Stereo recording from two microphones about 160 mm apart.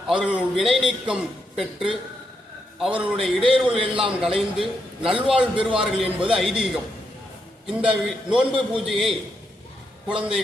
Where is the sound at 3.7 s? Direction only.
35° right (ahead or behind).